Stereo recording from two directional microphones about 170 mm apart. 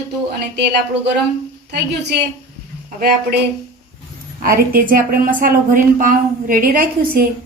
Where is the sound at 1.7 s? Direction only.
80° right.